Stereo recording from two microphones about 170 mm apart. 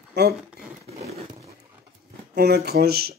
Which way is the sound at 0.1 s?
70° right (ahead or behind).